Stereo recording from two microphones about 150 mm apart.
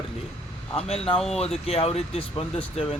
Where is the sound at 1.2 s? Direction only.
5° left (ahead or behind).